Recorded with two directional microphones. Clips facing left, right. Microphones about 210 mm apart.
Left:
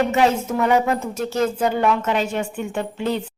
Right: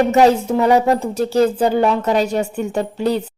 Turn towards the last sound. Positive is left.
turn(degrees=-40)  # may be behind; listen again after turning